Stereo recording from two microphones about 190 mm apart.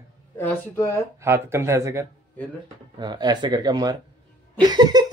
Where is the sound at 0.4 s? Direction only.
15° left (ahead or behind).